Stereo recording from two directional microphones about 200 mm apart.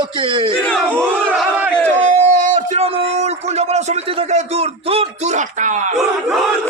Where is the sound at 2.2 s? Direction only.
35° right (ahead or behind).